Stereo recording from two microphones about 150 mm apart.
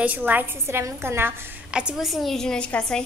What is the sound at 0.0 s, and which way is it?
A woman's voice, 10° right (ahead or behind).